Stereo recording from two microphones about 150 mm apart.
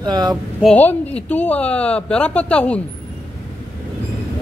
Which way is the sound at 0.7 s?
10° left (ahead or behind).